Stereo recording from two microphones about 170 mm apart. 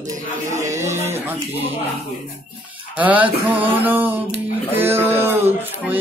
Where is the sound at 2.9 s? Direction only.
10° right (ahead or behind).